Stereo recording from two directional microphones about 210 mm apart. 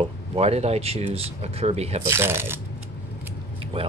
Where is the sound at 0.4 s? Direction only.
30° right (ahead or behind).